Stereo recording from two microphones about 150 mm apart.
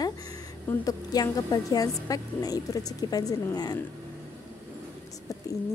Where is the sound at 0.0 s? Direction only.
25° left (ahead or behind).